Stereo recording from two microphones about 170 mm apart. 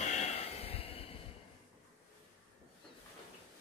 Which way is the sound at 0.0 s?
40° left (ahead or behind).